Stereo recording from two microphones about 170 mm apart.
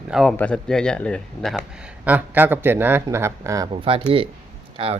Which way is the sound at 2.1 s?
10° right (ahead or behind).